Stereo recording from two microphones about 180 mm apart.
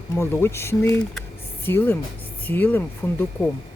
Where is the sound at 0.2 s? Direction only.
15° left (ahead or behind).